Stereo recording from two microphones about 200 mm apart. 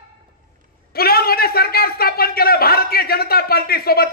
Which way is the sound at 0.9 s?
50° left (ahead or behind).